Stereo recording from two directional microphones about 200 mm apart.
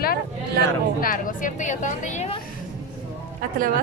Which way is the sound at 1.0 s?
45° left (ahead or behind).